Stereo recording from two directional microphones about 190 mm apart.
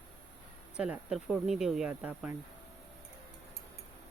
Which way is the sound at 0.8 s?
5° right (ahead or behind).